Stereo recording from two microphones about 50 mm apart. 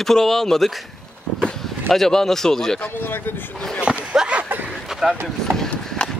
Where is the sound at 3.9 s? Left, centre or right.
Centre.